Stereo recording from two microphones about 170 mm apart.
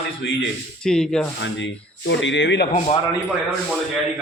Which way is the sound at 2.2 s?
90° left.